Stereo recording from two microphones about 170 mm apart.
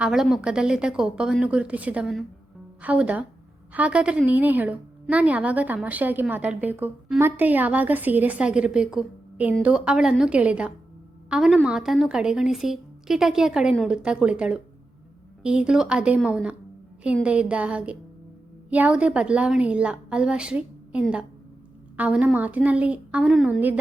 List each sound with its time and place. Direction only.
0.0 s a woman's voice: centre (ahead or behind)